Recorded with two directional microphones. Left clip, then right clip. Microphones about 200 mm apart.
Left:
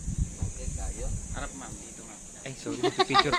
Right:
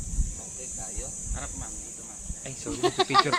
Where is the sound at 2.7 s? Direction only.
55° right (ahead or behind).